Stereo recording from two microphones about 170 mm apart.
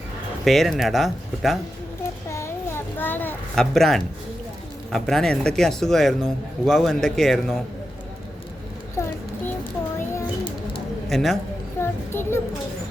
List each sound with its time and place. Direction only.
0.4 s a man's voice: centre (ahead or behind)
2.3 s a sound: 15° left (ahead or behind)
4.9 s a man's voice: centre (ahead or behind)
9.0 s a sound: 15° left (ahead or behind)
11.1 s a man's voice: centre (ahead or behind)
11.8 s child singing: 15° left (ahead or behind)